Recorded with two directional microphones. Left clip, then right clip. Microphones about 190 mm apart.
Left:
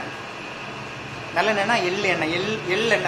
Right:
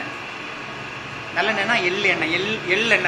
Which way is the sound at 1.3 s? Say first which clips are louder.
Even; 30° left (ahead or behind).